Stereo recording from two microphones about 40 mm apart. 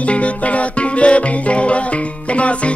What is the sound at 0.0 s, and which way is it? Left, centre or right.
Music, left.